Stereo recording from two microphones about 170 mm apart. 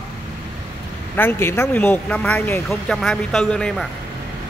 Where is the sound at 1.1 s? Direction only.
15° left (ahead or behind).